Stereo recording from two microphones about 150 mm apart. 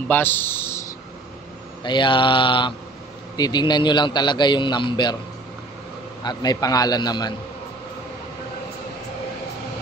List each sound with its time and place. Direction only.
0.1 s a man's voice: 15° left (ahead or behind)
1.8 s a man's voice: 30° left (ahead or behind)
6.2 s a man's voice: 25° left (ahead or behind)